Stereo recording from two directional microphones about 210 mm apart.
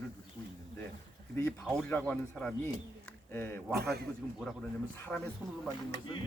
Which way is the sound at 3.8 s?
50° right (ahead or behind).